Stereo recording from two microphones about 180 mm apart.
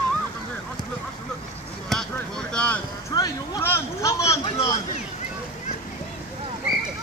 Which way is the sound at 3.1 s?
20° left (ahead or behind).